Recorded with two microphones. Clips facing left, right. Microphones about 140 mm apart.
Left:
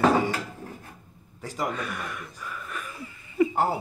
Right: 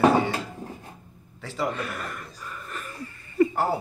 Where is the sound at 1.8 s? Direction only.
Centre (ahead or behind).